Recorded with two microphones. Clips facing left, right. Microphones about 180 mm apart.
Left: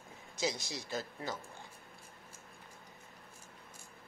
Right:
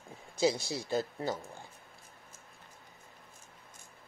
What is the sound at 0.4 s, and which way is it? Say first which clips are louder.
Speech: right 8 dB; 30° right (ahead or behind).